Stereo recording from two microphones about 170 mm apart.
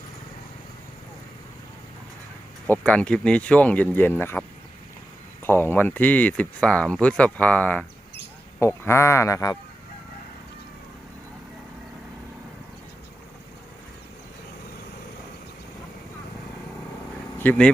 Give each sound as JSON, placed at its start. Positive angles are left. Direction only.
{"t": 2.8, "sound": "speech", "side_deg": 5}
{"t": 17.3, "sound": "speech", "side_deg": 10}